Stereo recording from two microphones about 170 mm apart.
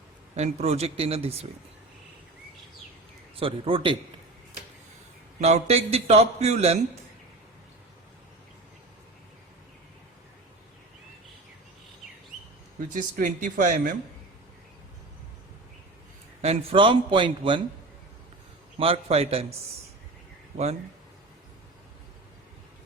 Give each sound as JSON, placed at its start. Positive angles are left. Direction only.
{"t": 0.3, "sound": "a man's voice", "side_deg": -40}
{"t": 3.3, "sound": "a man's voice", "side_deg": -35}
{"t": 5.4, "sound": "a man's voice", "side_deg": -40}
{"t": 12.9, "sound": "speech", "side_deg": -50}
{"t": 16.4, "sound": "a man's voice", "side_deg": -35}
{"t": 18.8, "sound": "a man's voice", "side_deg": -35}